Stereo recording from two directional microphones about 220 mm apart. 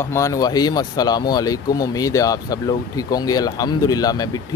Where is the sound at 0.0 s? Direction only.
15° left (ahead or behind).